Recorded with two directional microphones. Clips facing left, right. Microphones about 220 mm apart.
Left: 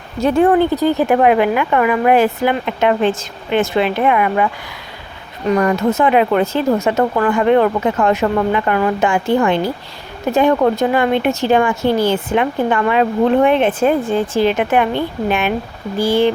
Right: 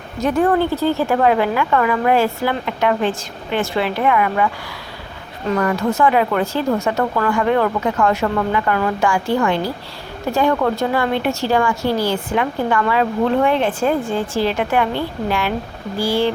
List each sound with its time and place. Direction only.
0.2 s a woman's voice: 25° left (ahead or behind)
5.5 s a woman's voice: 20° left (ahead or behind)